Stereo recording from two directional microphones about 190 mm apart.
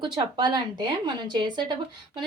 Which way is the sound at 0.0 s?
25° right (ahead or behind).